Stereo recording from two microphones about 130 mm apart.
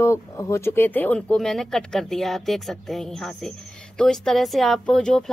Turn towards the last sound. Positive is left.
turn(degrees=5)  # may be behind; listen again after turning